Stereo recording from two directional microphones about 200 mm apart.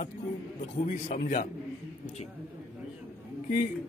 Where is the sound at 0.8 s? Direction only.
40° left (ahead or behind).